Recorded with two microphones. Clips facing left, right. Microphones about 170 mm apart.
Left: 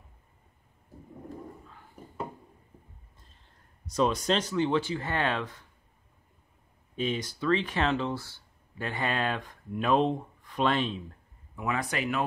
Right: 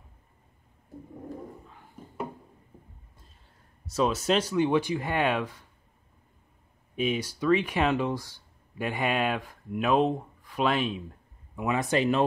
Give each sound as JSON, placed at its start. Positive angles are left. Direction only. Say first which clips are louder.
{"t": 3.9, "sound": "speech", "louder": "right 1 dB", "side_deg": -5}
{"t": 7.0, "sound": "speech", "louder": "right 3 dB", "side_deg": -10}
{"t": 11.5, "sound": "speech", "louder": "right 5 dB", "side_deg": -20}